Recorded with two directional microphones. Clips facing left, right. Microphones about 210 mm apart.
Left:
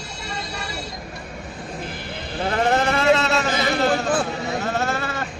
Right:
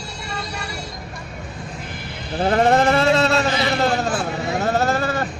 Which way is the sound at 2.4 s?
35° right (ahead or behind).